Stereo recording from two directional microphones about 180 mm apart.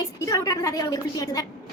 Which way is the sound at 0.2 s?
20° left (ahead or behind).